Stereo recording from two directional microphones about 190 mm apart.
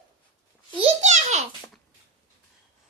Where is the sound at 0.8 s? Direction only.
40° right (ahead or behind).